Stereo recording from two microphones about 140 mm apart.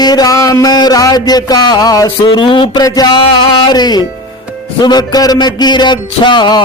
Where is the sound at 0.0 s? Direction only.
30° left (ahead or behind).